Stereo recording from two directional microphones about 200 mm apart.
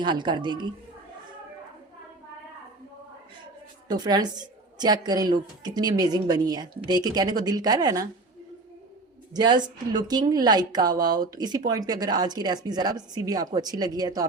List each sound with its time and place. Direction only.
0.0 s a woman's voice: 20° right (ahead or behind)
3.8 s a woman's voice: 20° right (ahead or behind)
9.3 s a woman's voice: 20° right (ahead or behind)